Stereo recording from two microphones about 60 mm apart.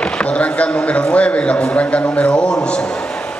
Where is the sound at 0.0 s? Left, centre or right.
Centre.